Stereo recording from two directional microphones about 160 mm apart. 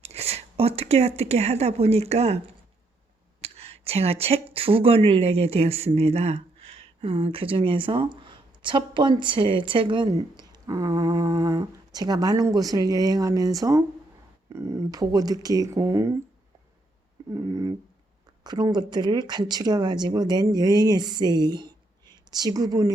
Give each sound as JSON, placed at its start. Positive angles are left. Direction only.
{"t": 0.0, "sound": "speech", "side_deg": -40}
{"t": 3.4, "sound": "speech", "side_deg": -40}
{"t": 17.3, "sound": "speech", "side_deg": -20}